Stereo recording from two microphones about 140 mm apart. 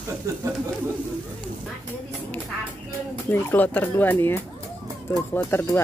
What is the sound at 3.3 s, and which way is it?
Speech, 10° left (ahead or behind).